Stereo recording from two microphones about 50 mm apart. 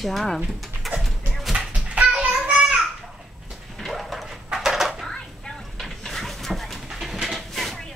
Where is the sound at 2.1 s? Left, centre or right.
Centre.